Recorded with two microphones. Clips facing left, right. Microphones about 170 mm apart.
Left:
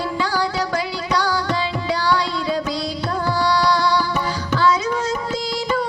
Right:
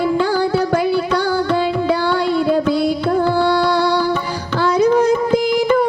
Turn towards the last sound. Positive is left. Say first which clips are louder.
# right 8 dB
turn(degrees=-55)  # may be behind; listen again after turning